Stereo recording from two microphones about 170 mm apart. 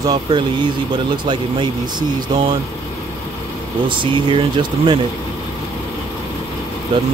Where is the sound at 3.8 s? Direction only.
30° right (ahead or behind).